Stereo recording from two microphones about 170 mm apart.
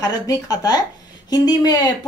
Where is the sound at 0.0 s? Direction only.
20° left (ahead or behind).